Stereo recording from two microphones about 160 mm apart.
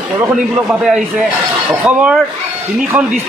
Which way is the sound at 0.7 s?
Centre (ahead or behind).